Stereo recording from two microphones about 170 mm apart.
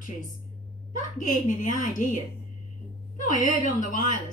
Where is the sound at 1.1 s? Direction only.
45° left (ahead or behind).